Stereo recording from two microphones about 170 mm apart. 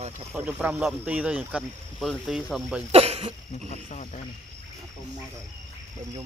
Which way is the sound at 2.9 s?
35° right (ahead or behind).